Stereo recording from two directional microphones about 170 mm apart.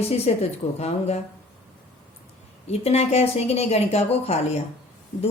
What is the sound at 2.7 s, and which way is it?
A woman's voice, 40° left (ahead or behind).